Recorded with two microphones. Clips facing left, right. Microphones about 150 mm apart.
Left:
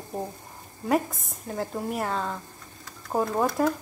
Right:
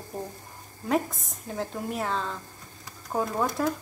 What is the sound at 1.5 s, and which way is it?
A woman's voice, 5° left (ahead or behind).